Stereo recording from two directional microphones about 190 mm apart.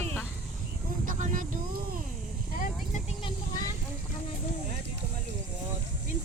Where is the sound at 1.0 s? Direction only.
45° right (ahead or behind).